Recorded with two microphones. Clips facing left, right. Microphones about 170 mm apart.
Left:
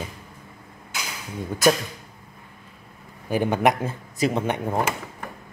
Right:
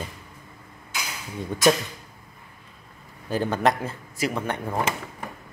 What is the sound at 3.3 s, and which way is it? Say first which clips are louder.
Speech: left 2 dB; 15° left (ahead or behind).